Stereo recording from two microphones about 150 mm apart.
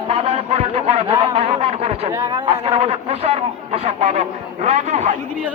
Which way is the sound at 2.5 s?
40° right (ahead or behind).